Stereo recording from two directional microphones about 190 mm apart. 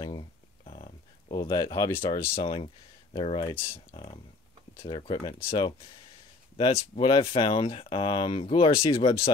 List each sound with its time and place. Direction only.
0.0 s a sound: 25° left (ahead or behind)
1.5 s speech: 20° left (ahead or behind)
3.5 s speech: 10° left (ahead or behind)
3.9 s speech: 25° left (ahead or behind)
8.7 s speech: 15° left (ahead or behind)